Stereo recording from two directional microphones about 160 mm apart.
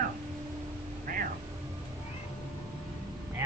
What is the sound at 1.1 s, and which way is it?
Vehicle, 60° right (ahead or behind).